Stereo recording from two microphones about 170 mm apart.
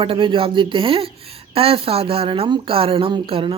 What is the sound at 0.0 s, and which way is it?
Speech, 30° right (ahead or behind).